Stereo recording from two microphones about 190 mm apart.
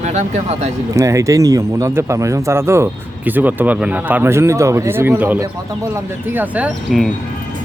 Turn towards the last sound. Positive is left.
turn(degrees=0)  # may be behind; listen again after turning